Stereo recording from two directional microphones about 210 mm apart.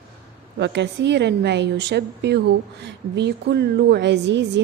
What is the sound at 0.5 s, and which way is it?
A woman's voice, 55° right (ahead or behind).